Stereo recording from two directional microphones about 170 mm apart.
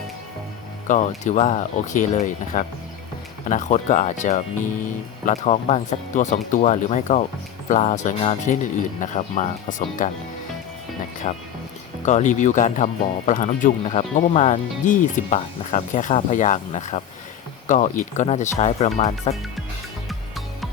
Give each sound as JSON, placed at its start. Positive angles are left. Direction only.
{"t": 0.9, "sound": "speech", "side_deg": 45}
{"t": 11.2, "sound": "speech", "side_deg": 45}
{"t": 20.1, "sound": "music", "side_deg": 0}